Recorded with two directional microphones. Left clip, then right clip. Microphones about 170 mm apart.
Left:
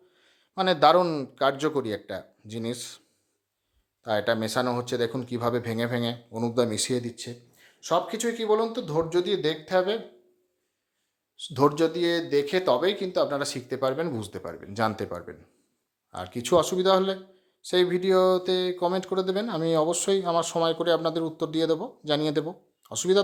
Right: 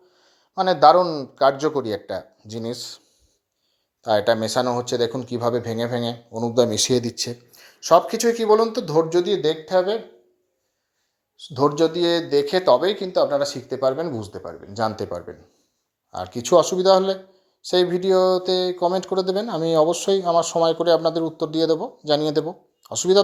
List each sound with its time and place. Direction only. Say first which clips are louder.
0.1 s a sound: right 4 dB; centre (ahead or behind)
0.5 s speech: right 6 dB; 35° left (ahead or behind)
1.0 s speech: right 3 dB; 45° left (ahead or behind)
1.5 s speech: right 4 dB; 35° left (ahead or behind)
1.8 s speech: right 5 dB; centre (ahead or behind)
4.0 s speech: right 7 dB; 10° right (ahead or behind); by 6.5 s 10° left (ahead or behind)
6.7 s speech: right 8 dB; 15° right (ahead or behind); by 10.0 s centre (ahead or behind)
11.9 s speech: right 5 dB; 5° right (ahead or behind); by 14.0 s 10° left (ahead or behind)
14.3 s speech: right 3 dB; 40° left (ahead or behind)
14.7 s speech: right 4 dB; 10° left (ahead or behind)